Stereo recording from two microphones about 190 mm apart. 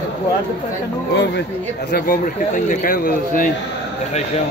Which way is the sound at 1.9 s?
50° left (ahead or behind).